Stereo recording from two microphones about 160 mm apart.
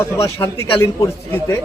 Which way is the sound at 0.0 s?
15° left (ahead or behind).